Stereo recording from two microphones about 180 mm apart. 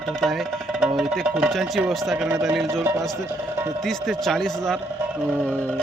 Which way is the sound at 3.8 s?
Centre (ahead or behind).